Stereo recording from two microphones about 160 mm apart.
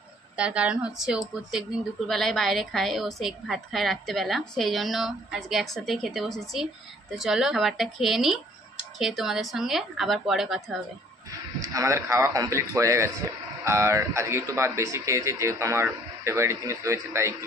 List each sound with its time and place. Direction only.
0.4 s a woman's voice: 10° right (ahead or behind)
11.2 s speech: 20° right (ahead or behind)